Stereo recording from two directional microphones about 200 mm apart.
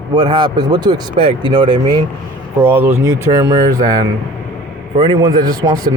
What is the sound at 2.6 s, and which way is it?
A man's voice, 10° right (ahead or behind).